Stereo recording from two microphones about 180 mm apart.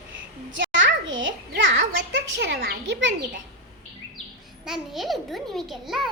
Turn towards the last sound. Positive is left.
turn(degrees=0)  # may be behind; listen again after turning